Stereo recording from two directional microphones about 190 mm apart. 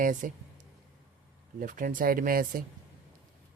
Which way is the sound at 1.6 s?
45° right (ahead or behind).